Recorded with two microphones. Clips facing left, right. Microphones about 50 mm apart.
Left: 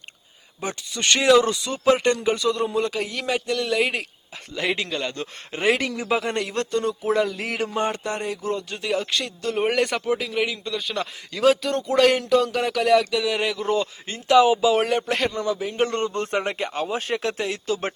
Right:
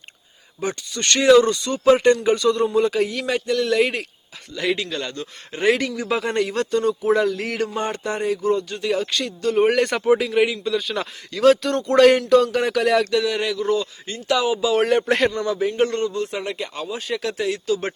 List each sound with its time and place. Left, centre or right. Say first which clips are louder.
0.6 s speech: right 2 dB; centre
4.5 s a man's voice: right 2 dB; left
4.9 s speech: even; centre
5.1 s a man's voice: even; left
5.6 s speech: right 2 dB; centre
13.7 s a man's voice: even; left
14.8 s speech: right 5 dB; centre
16.1 s speech: left 1 dB; left
17.5 s speech: right 3 dB; left